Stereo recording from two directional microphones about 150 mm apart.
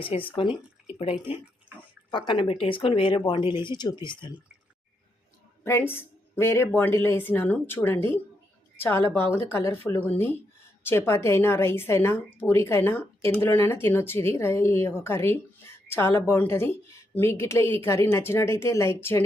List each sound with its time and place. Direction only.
0.0 s speech: 35° left (ahead or behind)
5.6 s speech: 15° left (ahead or behind)